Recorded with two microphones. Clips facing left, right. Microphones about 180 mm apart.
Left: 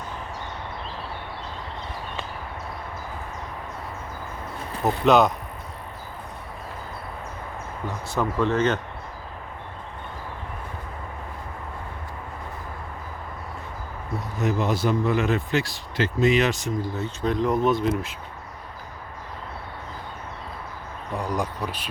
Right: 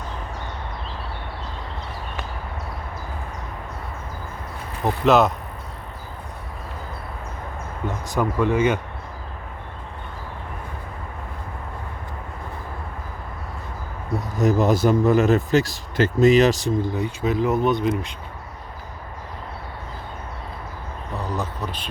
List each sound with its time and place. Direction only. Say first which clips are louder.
5.0 s speech: right 1 dB; centre (ahead or behind)
7.9 s speech: right 3 dB; 15° right (ahead or behind)
14.3 s speech: right 6 dB; 40° right (ahead or behind)
16.9 s speech: right 4 dB; 15° right (ahead or behind)
17.2 s speech: right 1 dB; 5° right (ahead or behind)
21.2 s a sound: left 1 dB; 10° left (ahead or behind)